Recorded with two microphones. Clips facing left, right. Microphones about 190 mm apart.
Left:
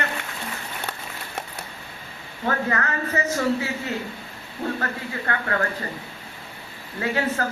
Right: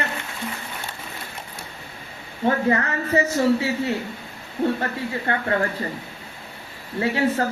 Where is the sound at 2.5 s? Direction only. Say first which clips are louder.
Right 4 dB; 30° right (ahead or behind).